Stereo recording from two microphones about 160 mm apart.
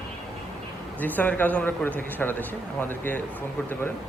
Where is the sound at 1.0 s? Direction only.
10° left (ahead or behind).